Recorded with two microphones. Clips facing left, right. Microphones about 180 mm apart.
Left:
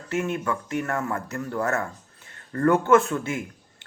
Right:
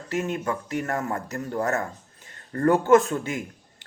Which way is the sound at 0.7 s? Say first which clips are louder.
Left 1 dB; 35° right (ahead or behind).